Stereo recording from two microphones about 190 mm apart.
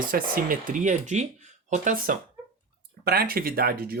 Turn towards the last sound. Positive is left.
turn(degrees=-55)  # may be behind; listen again after turning